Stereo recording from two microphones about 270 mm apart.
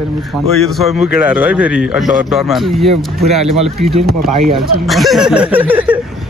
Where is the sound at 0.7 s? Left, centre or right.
Centre.